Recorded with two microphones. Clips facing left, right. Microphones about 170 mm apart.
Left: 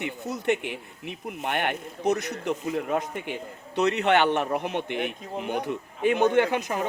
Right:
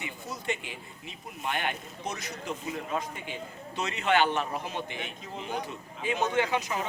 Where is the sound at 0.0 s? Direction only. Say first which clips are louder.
Left 8 dB; 60° left (ahead or behind).